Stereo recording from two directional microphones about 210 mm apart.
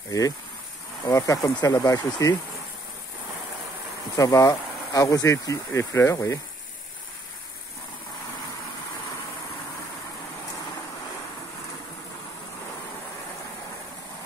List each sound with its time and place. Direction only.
1.0 s speech: 15° left (ahead or behind)
4.2 s speech: 15° left (ahead or behind)